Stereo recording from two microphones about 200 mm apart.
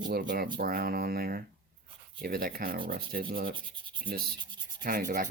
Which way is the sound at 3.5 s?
25° right (ahead or behind).